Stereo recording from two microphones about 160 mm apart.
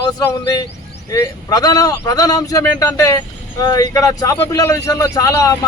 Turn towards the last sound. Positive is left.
turn(degrees=20)  # may be behind; listen again after turning